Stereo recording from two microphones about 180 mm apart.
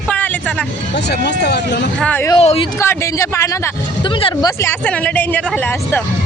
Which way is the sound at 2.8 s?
15° left (ahead or behind).